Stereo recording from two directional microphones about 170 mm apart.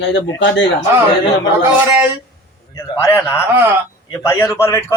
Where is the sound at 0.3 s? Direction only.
90° left.